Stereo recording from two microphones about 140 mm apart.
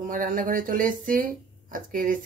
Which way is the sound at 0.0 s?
70° right (ahead or behind).